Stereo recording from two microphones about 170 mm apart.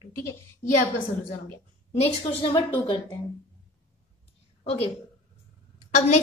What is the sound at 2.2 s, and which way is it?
A woman's voice, 30° left (ahead or behind).